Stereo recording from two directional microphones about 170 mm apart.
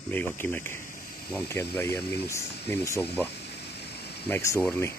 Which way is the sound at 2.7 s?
15° left (ahead or behind).